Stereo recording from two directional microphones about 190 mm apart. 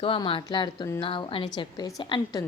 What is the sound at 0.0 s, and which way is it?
A woman's voice, 30° left (ahead or behind).